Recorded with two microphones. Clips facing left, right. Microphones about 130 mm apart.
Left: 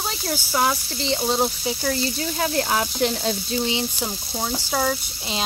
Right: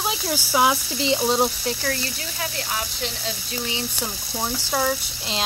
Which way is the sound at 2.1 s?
35° left (ahead or behind).